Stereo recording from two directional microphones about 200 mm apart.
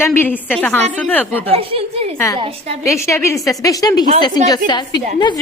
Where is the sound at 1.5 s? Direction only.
30° right (ahead or behind).